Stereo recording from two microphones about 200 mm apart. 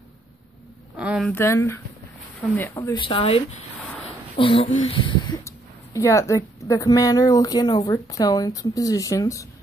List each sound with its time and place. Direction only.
0.9 s speech: 5° right (ahead or behind)
1.3 s speech: 15° left (ahead or behind)
3.0 s speech: 25° left (ahead or behind)
5.9 s speech: 15° left (ahead or behind)